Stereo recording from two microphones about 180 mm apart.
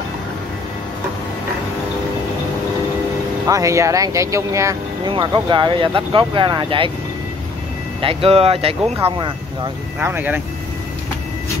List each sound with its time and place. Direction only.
3.4 s speech: 20° right (ahead or behind)
8.0 s speech: 30° right (ahead or behind)
9.9 s speech: 10° right (ahead or behind)